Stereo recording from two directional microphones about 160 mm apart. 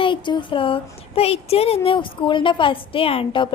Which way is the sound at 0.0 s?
30° left (ahead or behind).